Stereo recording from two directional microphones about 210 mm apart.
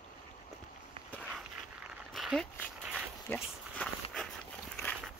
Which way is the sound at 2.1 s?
Centre (ahead or behind).